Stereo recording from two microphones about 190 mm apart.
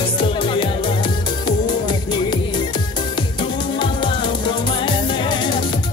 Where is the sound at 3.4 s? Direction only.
25° left (ahead or behind).